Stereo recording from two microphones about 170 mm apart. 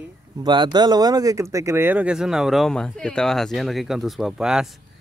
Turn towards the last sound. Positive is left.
turn(degrees=-5)  # may be behind; listen again after turning